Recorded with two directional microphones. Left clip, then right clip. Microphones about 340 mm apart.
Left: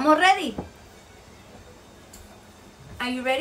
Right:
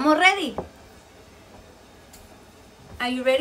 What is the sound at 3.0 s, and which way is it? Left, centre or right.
Speech, centre.